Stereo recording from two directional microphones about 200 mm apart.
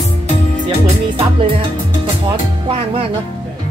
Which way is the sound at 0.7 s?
30° right (ahead or behind).